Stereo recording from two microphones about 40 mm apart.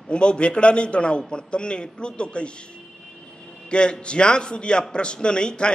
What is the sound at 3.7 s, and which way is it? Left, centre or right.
A man's voice, left.